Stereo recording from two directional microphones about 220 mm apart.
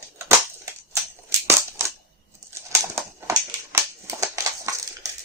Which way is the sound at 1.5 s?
10° right (ahead or behind).